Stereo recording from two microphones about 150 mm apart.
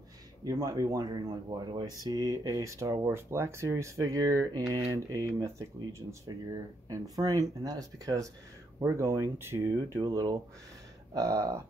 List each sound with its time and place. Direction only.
0.4 s speech: 25° right (ahead or behind)